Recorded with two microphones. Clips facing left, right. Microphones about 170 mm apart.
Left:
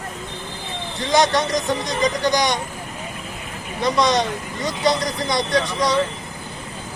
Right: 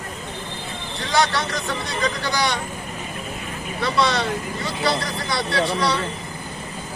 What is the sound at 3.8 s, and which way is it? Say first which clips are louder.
Speech: left 3 dB; 15° left (ahead or behind).